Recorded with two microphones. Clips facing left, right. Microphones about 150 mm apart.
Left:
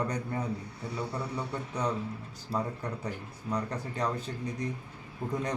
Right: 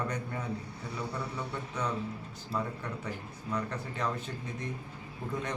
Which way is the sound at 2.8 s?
35° left (ahead or behind).